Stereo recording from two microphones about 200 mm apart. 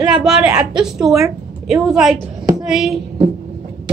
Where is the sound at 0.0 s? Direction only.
Centre (ahead or behind).